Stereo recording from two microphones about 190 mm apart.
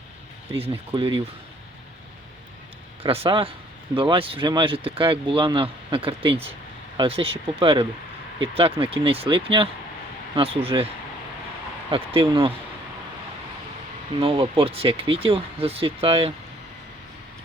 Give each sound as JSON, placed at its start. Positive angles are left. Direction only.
{"t": 0.5, "sound": "speech", "side_deg": -30}
{"t": 3.0, "sound": "speech", "side_deg": -30}
{"t": 11.9, "sound": "speech", "side_deg": -30}
{"t": 14.2, "sound": "speech", "side_deg": -30}